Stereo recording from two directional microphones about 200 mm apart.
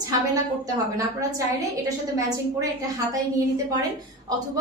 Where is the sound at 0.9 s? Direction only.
15° right (ahead or behind).